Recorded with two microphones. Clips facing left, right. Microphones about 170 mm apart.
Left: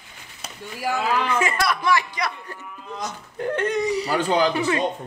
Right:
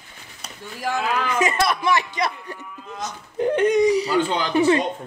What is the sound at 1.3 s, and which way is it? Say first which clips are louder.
Speech: right 2 dB; 20° right (ahead or behind).